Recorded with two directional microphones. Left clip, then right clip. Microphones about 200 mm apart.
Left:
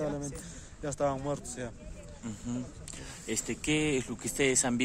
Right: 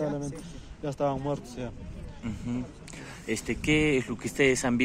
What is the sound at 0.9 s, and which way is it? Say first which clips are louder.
Speech: right 2 dB; 10° left (ahead or behind).